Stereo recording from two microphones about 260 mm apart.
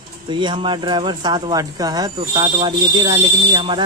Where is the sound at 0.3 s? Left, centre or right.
Centre.